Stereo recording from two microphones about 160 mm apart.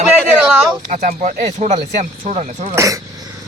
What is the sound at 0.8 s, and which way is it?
Speech, 50° right (ahead or behind).